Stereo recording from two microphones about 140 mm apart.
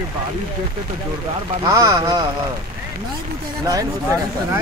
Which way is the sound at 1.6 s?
25° right (ahead or behind).